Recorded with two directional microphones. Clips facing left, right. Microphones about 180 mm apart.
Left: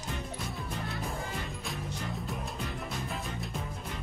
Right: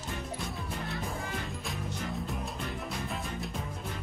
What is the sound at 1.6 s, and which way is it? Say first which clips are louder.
Music: right 1 dB; centre (ahead or behind).